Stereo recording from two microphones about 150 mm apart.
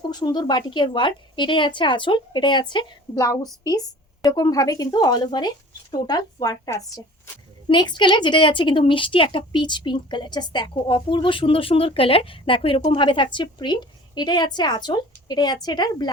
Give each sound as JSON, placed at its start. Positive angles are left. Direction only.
{"t": 0.1, "sound": "a woman's voice", "side_deg": 30}